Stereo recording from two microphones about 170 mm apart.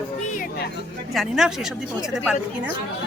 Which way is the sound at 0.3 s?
60° left (ahead or behind).